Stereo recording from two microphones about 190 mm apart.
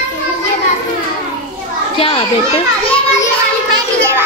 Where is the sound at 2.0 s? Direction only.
30° left (ahead or behind).